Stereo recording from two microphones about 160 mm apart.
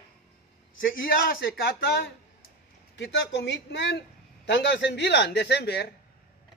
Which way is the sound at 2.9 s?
90° left.